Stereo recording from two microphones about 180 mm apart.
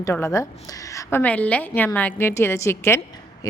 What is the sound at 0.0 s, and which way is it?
A woman's voice, 15° left (ahead or behind).